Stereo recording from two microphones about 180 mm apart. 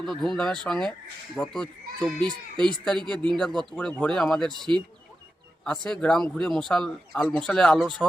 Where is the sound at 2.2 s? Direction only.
25° right (ahead or behind).